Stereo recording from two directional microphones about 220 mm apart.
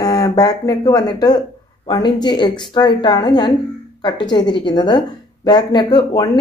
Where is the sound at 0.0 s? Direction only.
15° left (ahead or behind).